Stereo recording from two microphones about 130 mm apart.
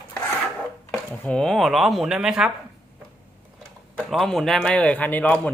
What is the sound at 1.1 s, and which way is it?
Speech, 10° left (ahead or behind).